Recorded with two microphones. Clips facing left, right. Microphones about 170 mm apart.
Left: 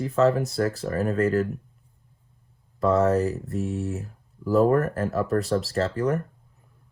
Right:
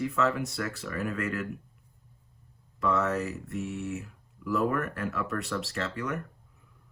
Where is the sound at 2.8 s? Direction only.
35° left (ahead or behind).